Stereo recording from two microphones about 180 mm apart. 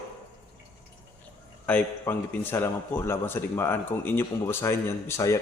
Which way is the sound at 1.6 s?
10° left (ahead or behind).